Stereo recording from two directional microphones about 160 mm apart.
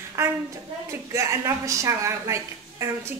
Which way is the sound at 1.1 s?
20° right (ahead or behind).